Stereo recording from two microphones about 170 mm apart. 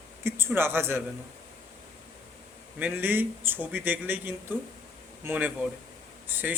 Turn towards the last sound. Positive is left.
turn(degrees=-10)  # may be behind; listen again after turning